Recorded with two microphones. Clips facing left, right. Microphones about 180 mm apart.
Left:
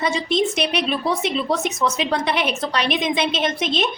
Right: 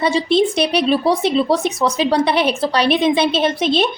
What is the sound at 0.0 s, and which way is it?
Speech, 30° right (ahead or behind).